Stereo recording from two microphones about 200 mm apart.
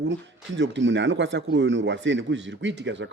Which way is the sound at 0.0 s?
65° right (ahead or behind).